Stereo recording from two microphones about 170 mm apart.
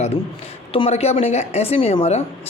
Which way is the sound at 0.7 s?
35° left (ahead or behind).